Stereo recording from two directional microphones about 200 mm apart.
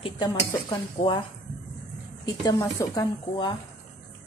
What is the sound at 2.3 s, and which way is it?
Speech, 15° left (ahead or behind).